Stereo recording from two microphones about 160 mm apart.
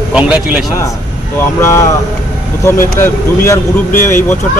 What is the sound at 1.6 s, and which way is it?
Speech, 20° left (ahead or behind).